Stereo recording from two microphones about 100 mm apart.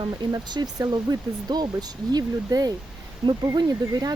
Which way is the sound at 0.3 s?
40° right (ahead or behind).